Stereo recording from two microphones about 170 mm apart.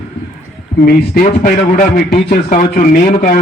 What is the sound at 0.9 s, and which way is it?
Speech, 55° left (ahead or behind).